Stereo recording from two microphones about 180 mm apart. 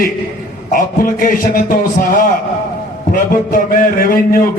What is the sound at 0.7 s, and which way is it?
A man's voice, 50° left (ahead or behind).